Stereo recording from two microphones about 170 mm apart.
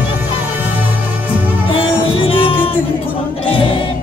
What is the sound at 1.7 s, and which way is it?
Music, 30° left (ahead or behind).